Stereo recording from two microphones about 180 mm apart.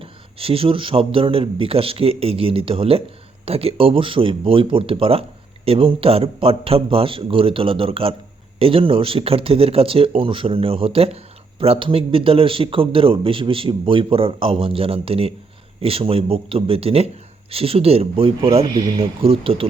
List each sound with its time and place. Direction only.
0.0 s speech: 30° right (ahead or behind)